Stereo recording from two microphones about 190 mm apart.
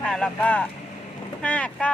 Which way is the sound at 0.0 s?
5° left (ahead or behind).